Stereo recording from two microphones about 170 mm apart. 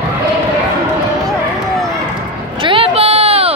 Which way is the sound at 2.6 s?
30° right (ahead or behind).